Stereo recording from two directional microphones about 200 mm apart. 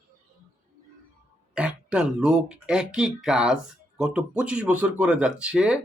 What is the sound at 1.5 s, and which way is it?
Speech, 5° right (ahead or behind).